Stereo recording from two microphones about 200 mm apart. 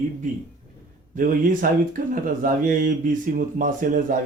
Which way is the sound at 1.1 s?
45° right (ahead or behind).